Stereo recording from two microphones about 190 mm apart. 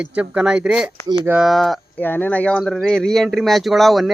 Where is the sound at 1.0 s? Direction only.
20° right (ahead or behind).